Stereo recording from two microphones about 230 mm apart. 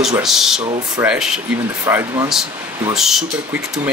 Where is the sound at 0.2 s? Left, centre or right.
Centre.